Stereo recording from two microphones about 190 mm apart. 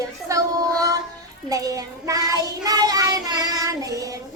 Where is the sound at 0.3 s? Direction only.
20° right (ahead or behind).